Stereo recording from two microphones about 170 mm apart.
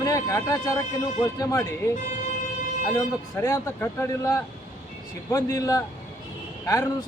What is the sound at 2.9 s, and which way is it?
Speech, 20° left (ahead or behind).